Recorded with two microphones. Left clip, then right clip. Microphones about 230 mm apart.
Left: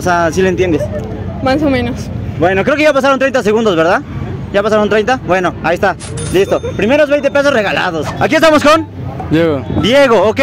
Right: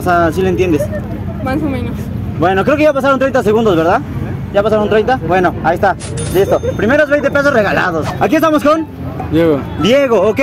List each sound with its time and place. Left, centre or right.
0.0 s speech: left